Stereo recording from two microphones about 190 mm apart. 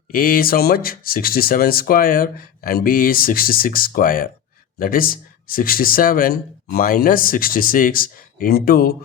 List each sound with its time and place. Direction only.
0.1 s speech: 50° left (ahead or behind)